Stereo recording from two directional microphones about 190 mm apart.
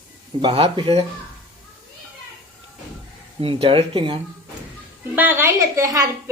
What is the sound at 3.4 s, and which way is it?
Speech, 30° right (ahead or behind).